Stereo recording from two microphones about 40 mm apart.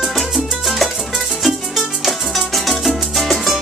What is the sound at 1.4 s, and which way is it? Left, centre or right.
Music, centre.